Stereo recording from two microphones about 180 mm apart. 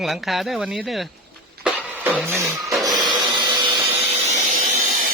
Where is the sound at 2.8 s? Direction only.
25° right (ahead or behind).